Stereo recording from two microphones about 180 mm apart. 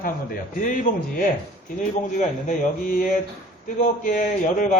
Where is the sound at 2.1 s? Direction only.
45° left (ahead or behind).